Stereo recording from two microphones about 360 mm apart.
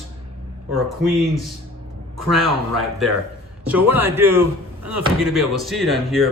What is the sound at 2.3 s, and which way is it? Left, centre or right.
Speech, centre.